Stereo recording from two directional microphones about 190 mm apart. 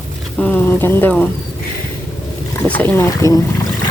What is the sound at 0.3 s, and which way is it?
Bird, 10° left (ahead or behind).